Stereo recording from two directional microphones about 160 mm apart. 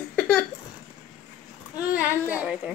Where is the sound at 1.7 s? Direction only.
10° right (ahead or behind).